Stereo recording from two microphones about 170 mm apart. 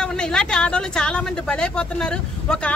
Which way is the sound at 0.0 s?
5° left (ahead or behind).